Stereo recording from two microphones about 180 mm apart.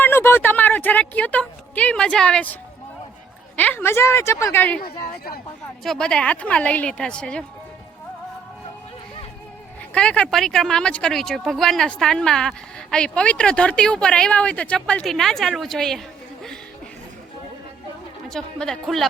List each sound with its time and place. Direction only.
0.0 s speech: 10° left (ahead or behind)
3.6 s a woman's voice: 10° left (ahead or behind)
4.8 s speech: 60° left (ahead or behind)
5.8 s speech: 5° left (ahead or behind)
9.9 s speech: 5° left (ahead or behind)
18.3 s speech: 5° left (ahead or behind)